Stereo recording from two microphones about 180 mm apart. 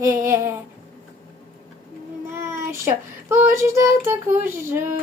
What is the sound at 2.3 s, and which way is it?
Child singing, 15° right (ahead or behind).